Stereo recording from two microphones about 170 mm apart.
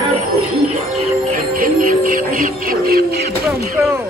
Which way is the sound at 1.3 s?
55° right (ahead or behind).